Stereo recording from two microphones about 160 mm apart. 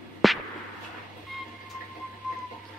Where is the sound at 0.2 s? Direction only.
Centre (ahead or behind).